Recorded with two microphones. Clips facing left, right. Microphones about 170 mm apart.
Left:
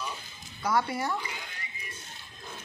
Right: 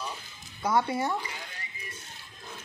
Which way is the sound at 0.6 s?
20° right (ahead or behind).